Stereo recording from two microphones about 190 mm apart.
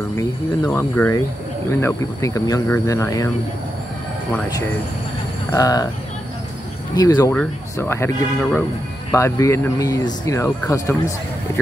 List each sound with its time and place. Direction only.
0.2 s speech: 10° left (ahead or behind)
5.5 s speech: 20° left (ahead or behind)
7.0 s speech: 20° left (ahead or behind)